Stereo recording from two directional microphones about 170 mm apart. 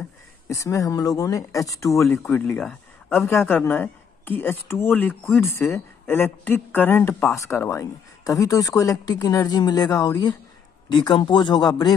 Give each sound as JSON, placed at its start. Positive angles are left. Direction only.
{"t": 0.5, "sound": "a woman's voice", "side_deg": 20}